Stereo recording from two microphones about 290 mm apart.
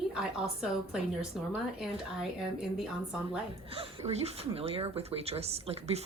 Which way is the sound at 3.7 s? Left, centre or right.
Right.